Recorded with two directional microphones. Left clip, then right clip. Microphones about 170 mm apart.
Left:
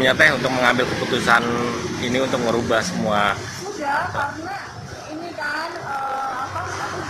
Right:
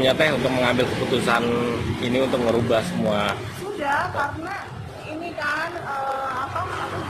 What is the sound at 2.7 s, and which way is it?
Speech, 10° right (ahead or behind).